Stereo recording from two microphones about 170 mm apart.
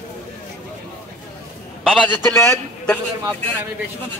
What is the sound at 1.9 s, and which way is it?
A man's voice, 10° left (ahead or behind).